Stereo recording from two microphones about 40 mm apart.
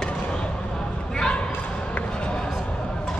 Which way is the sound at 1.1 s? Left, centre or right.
Centre.